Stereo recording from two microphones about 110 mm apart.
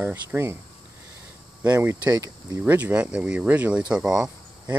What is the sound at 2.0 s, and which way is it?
Speech, 30° right (ahead or behind).